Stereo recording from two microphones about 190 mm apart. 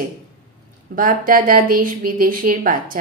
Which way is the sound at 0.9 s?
45° right (ahead or behind).